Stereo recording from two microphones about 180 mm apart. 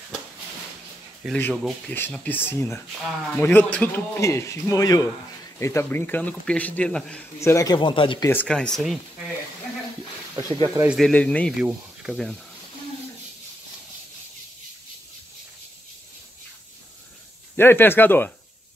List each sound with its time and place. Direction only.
1.2 s a man's voice: 5° left (ahead or behind)
7.3 s speech: 15° left (ahead or behind)
8.3 s speech: 5° left (ahead or behind)
10.6 s speech: 20° right (ahead or behind)
10.9 s speech: 5° left (ahead or behind)
17.6 s a man's voice: 10° left (ahead or behind)